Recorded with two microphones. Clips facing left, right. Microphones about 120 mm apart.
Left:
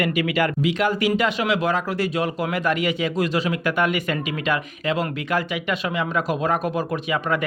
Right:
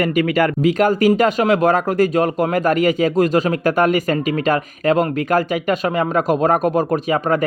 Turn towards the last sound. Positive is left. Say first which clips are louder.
# right 6 dB
turn(degrees=-40)  # may be behind; listen again after turning